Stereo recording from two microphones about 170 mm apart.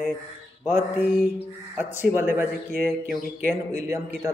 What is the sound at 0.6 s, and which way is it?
A man's voice, 10° right (ahead or behind).